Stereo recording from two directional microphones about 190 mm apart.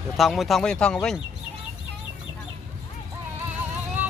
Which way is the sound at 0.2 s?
Centre (ahead or behind).